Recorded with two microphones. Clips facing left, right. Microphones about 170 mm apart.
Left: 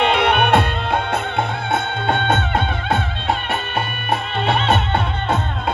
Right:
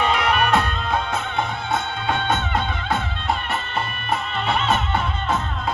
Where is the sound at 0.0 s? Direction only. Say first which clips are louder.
Left 4 dB; 60° left (ahead or behind).